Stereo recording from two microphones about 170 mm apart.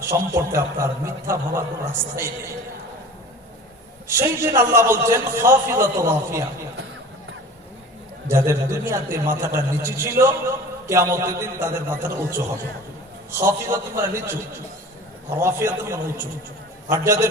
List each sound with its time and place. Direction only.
0.0 s a man's voice: 15° right (ahead or behind)
4.1 s a man's voice: 15° right (ahead or behind)
8.3 s a man's voice: 15° right (ahead or behind)
15.4 s a man's voice: 15° right (ahead or behind)